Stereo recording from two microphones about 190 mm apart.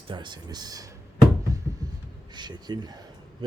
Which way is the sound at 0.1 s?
25° right (ahead or behind).